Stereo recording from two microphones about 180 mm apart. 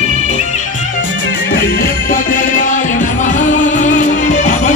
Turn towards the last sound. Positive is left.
turn(degrees=40)  # may be behind; listen again after turning